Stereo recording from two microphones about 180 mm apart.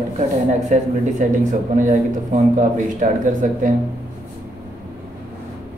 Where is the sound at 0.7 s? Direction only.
45° right (ahead or behind).